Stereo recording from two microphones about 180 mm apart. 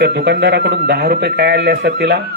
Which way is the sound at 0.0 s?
70° right (ahead or behind).